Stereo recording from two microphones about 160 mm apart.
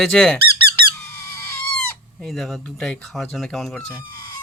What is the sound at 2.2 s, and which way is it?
Speech, centre (ahead or behind).